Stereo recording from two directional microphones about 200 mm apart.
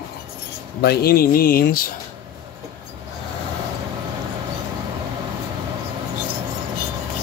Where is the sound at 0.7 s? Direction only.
50° left (ahead or behind).